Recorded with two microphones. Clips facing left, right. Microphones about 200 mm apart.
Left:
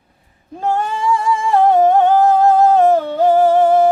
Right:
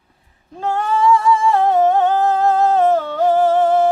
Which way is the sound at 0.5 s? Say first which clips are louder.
Even; 10° left (ahead or behind).